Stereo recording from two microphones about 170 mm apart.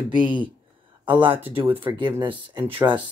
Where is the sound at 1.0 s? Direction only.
30° right (ahead or behind).